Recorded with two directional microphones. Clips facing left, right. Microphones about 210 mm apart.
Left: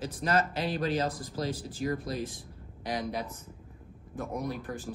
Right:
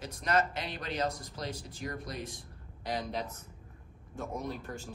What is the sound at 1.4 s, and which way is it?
Speech, 5° left (ahead or behind).